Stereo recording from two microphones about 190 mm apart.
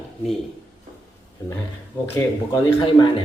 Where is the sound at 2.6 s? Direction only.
25° left (ahead or behind).